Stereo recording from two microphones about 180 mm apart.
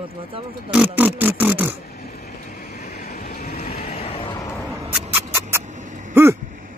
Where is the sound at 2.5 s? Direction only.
60° left (ahead or behind).